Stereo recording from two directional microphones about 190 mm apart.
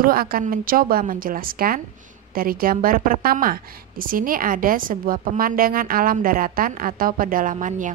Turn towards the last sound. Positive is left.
turn(degrees=-40)  # may be behind; listen again after turning